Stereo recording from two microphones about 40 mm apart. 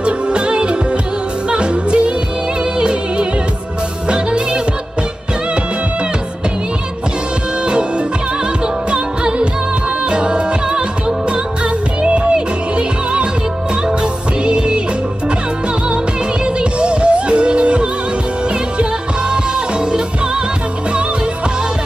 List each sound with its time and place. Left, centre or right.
0.0 s music: right
8.9 s music: right
12.0 s music: right
14.4 s music: right
16.7 s music: right
19.3 s music: right